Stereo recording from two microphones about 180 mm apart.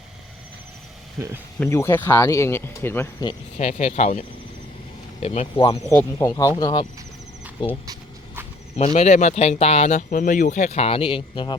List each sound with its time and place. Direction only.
1.5 s speech: 10° left (ahead or behind)
3.6 s speech: 40° left (ahead or behind)
5.2 s speech: 35° left (ahead or behind)
5.9 s speech: 15° left (ahead or behind)